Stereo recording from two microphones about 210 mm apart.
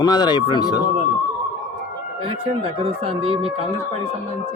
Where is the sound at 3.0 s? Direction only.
25° right (ahead or behind).